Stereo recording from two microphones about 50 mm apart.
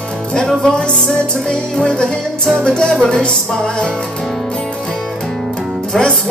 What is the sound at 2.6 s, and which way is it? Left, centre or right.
Music, centre.